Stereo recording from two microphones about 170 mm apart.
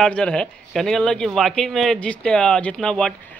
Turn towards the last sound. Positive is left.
turn(degrees=5)  # may be behind; listen again after turning